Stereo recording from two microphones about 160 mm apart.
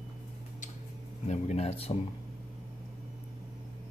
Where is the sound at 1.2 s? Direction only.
45° left (ahead or behind).